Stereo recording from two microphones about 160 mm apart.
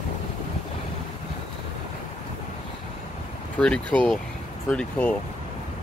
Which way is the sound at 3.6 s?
5° left (ahead or behind).